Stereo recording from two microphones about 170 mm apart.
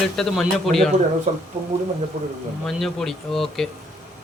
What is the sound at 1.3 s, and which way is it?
Speech, 45° right (ahead or behind).